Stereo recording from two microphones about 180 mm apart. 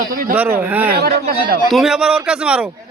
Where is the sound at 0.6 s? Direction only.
10° right (ahead or behind).